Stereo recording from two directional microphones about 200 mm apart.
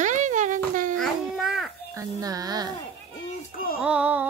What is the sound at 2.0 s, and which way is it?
Speech, 15° right (ahead or behind).